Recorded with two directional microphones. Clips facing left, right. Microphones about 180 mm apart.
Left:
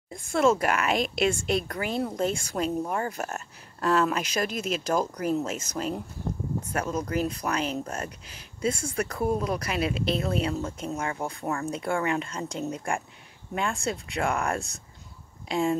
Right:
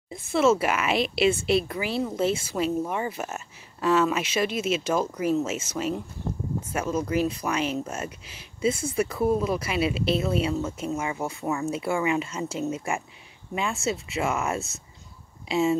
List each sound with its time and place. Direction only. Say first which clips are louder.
0.1 s speech: right 2 dB; 5° right (ahead or behind)
0.9 s a woman's voice: right 3 dB; 45° left (ahead or behind)
1.6 s speech: right 1 dB; 5° right (ahead or behind)